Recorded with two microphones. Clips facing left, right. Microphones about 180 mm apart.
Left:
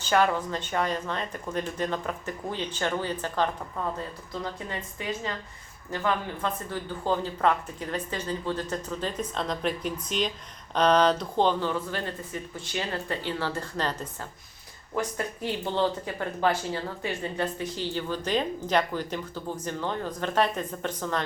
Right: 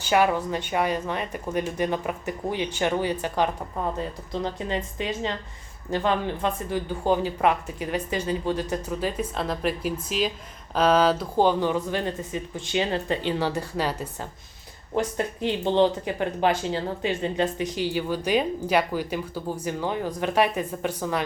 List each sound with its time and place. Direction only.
0.0 s speech: 10° right (ahead or behind)
14.9 s speech: 25° right (ahead or behind)